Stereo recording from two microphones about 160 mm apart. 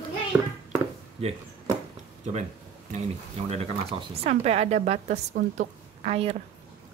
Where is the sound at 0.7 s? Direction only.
40° right (ahead or behind).